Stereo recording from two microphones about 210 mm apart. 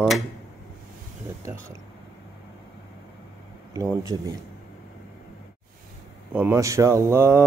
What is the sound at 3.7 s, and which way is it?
Speech, 15° right (ahead or behind).